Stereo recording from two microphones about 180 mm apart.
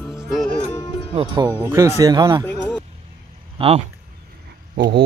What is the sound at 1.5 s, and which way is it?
Speech, 15° right (ahead or behind).